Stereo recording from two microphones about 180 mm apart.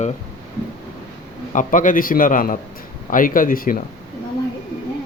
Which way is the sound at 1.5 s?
45° left (ahead or behind).